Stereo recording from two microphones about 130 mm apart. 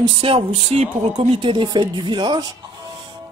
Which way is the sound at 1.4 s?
40° right (ahead or behind).